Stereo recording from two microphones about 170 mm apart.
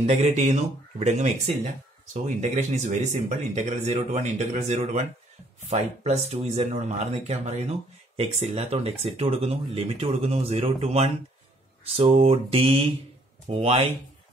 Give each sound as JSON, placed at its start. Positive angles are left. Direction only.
{"t": 0.0, "sound": "speech", "side_deg": -40}